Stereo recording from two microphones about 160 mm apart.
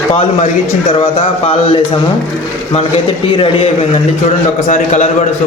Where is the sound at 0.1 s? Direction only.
40° left (ahead or behind).